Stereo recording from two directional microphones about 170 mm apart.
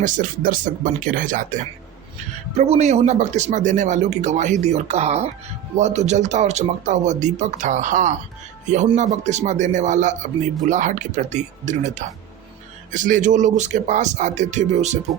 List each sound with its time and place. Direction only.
0.0 s a man's voice: 50° right (ahead or behind)
2.6 s a man's voice: 40° right (ahead or behind)